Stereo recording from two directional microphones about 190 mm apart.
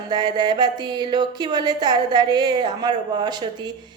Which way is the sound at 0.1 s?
20° right (ahead or behind).